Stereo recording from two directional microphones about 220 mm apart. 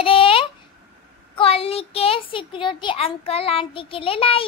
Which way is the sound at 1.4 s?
25° left (ahead or behind).